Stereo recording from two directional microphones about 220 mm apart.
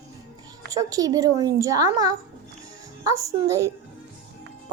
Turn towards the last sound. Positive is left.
turn(degrees=-15)  # may be behind; listen again after turning